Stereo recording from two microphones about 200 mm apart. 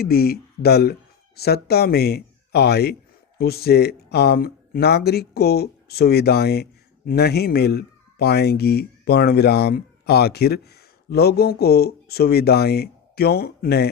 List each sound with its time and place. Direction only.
0.0 s speech: 50° left (ahead or behind)